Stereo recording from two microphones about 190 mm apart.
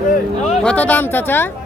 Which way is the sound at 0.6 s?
5° left (ahead or behind).